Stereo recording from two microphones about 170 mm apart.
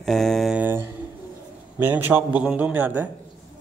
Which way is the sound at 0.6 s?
15° right (ahead or behind).